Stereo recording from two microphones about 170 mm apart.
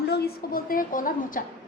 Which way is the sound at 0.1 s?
60° left (ahead or behind).